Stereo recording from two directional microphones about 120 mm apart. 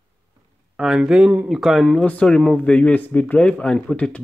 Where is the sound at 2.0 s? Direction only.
10° left (ahead or behind).